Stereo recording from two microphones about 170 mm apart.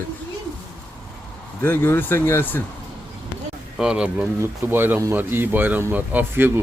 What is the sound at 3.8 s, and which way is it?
Speech, 5° right (ahead or behind).